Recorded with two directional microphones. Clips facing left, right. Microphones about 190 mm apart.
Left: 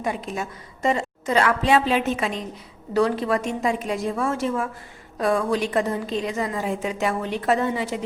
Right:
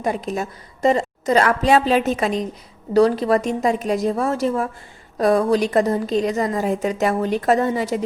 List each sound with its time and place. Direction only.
0.0 s a woman's voice: 40° right (ahead or behind)